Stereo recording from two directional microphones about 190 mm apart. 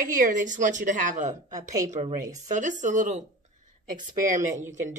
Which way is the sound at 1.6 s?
15° right (ahead or behind).